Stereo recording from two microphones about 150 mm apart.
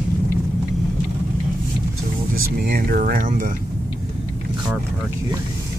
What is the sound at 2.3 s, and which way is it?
Speech, 80° right.